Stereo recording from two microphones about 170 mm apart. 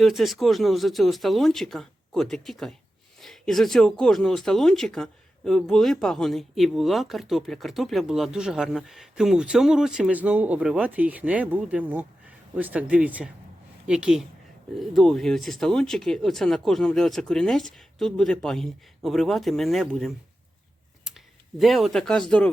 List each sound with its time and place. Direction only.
0.0 s speech: centre (ahead or behind)
21.6 s speech: centre (ahead or behind)